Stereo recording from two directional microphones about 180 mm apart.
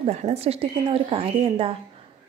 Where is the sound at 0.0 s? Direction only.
35° right (ahead or behind).